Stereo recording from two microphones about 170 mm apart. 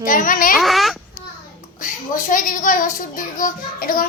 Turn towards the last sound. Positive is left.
turn(degrees=55)  # may be behind; listen again after turning